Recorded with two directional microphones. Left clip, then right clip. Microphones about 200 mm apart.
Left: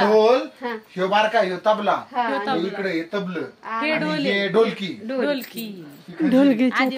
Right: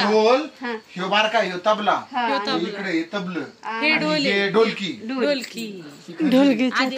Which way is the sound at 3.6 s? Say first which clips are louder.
Right 3 dB; 50° left (ahead or behind).